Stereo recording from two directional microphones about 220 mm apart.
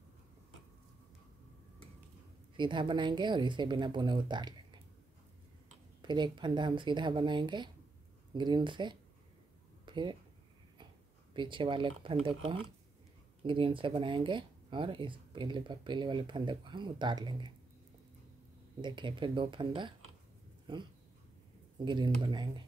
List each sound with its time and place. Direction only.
2.5 s speech: 20° right (ahead or behind)
6.0 s speech: 20° right (ahead or behind)
9.8 s a sound: 20° right (ahead or behind)
11.3 s speech: 20° right (ahead or behind)
18.8 s speech: 20° right (ahead or behind)